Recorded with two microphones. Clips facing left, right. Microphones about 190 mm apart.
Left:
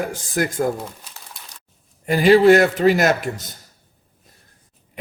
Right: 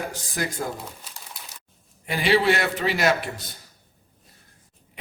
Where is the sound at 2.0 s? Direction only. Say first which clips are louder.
Left 9 dB; 45° left (ahead or behind).